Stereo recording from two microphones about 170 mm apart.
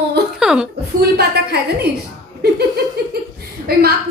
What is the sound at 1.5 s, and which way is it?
Speech, 70° right (ahead or behind).